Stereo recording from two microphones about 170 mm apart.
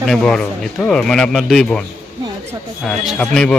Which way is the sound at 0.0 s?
5° left (ahead or behind).